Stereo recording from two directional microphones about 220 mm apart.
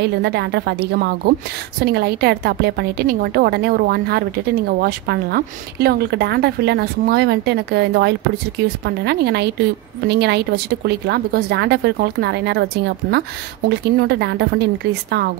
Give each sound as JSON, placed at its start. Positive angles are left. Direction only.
{"t": 0.0, "sound": "a woman's voice", "side_deg": -50}